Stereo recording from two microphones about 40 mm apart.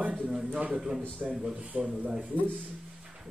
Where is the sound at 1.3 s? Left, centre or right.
Centre.